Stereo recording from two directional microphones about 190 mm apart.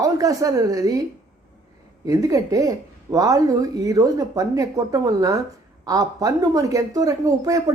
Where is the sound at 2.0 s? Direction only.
20° right (ahead or behind).